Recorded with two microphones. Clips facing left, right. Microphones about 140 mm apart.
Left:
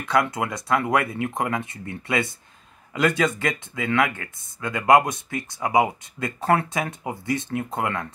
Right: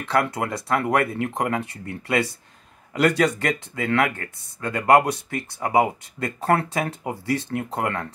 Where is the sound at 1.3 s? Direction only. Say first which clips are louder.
Right 1 dB; 35° right (ahead or behind).